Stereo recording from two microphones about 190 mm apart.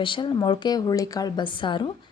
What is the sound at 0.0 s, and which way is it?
A woman's voice, 25° left (ahead or behind).